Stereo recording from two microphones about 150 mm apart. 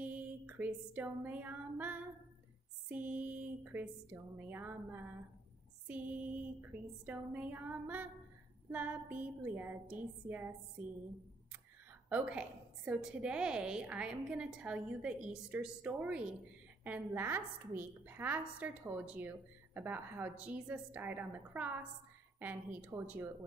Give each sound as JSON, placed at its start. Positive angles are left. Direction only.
{"t": 0.0, "sound": "a sound", "side_deg": -10}
{"t": 2.9, "sound": "a woman's voice", "side_deg": -10}
{"t": 6.6, "sound": "a woman's voice", "side_deg": -10}
{"t": 12.1, "sound": "a woman's voice", "side_deg": -10}